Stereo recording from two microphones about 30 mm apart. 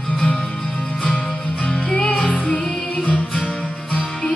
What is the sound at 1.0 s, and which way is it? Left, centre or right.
Music, left.